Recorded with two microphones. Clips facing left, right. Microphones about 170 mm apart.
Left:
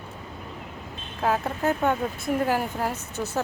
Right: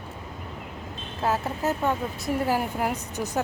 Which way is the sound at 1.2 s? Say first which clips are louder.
Left 1 dB; 5° right (ahead or behind).